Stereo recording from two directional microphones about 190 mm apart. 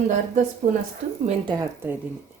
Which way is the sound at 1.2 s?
25° right (ahead or behind).